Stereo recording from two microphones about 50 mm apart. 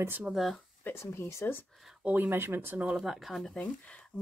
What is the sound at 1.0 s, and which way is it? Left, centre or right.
Speech, left.